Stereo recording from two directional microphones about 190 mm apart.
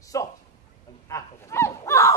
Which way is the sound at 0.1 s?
15° left (ahead or behind).